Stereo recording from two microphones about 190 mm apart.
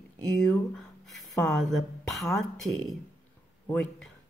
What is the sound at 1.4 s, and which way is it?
Speech, 5° left (ahead or behind).